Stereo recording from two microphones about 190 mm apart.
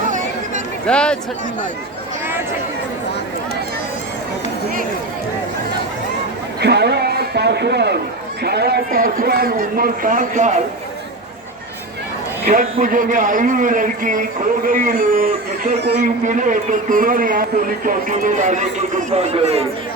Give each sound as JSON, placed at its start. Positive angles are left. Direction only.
{"t": 0.9, "sound": "speech", "side_deg": 5}
{"t": 6.6, "sound": "a sound", "side_deg": -60}
{"t": 8.4, "sound": "a man's voice", "side_deg": -60}
{"t": 12.5, "sound": "a man's voice", "side_deg": -45}